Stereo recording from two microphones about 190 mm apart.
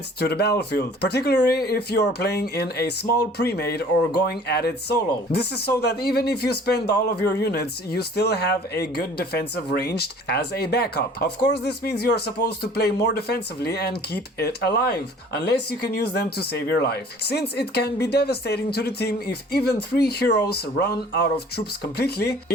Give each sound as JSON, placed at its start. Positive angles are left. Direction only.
{"t": 0.2, "sound": "speech", "side_deg": 60}